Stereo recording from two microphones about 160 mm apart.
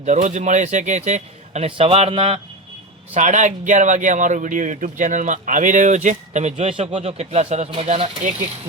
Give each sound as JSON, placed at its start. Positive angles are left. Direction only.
{"t": 0.0, "sound": "speech", "side_deg": -50}
{"t": 3.2, "sound": "speech", "side_deg": -50}